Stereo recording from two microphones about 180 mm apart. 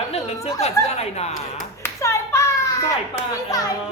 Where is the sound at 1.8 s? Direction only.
15° left (ahead or behind).